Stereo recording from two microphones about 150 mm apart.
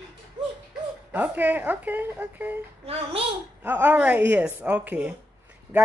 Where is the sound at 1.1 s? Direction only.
10° right (ahead or behind).